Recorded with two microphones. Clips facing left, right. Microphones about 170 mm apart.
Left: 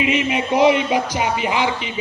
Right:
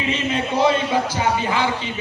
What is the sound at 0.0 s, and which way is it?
Speech, 15° left (ahead or behind).